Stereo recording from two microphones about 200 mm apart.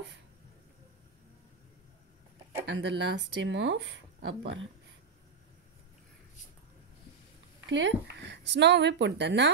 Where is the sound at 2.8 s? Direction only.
65° right (ahead or behind).